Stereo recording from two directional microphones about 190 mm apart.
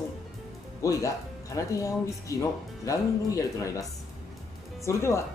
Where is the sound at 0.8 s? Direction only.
15° left (ahead or behind).